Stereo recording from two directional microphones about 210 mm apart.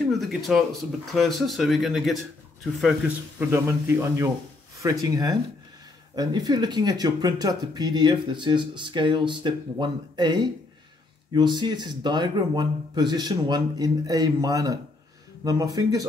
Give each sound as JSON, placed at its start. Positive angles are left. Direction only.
{"t": 0.1, "sound": "speech", "side_deg": 0}
{"t": 3.3, "sound": "a man's voice", "side_deg": -10}